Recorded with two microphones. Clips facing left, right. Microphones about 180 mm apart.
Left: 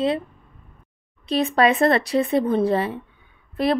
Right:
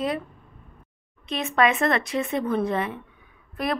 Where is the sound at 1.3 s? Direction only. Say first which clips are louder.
Left 4 dB; 35° left (ahead or behind).